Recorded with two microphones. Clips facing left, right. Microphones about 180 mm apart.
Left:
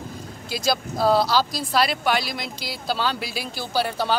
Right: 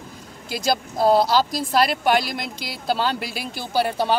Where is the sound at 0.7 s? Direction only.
20° right (ahead or behind).